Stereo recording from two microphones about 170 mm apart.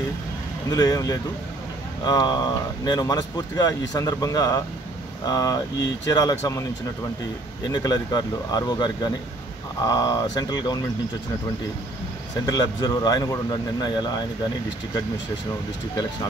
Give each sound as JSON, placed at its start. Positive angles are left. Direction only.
{"t": 0.7, "sound": "speech", "side_deg": 20}
{"t": 7.7, "sound": "speech", "side_deg": 25}
{"t": 12.4, "sound": "speech", "side_deg": 20}